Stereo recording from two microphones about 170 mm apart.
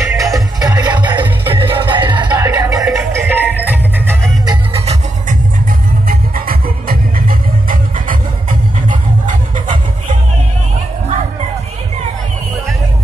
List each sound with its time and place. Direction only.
0.2 s music: 20° right (ahead or behind)
6.0 s music: 60° right (ahead or behind)